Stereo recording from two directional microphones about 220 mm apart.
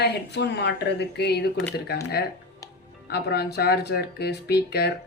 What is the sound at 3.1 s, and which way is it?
Speech, 45° left (ahead or behind).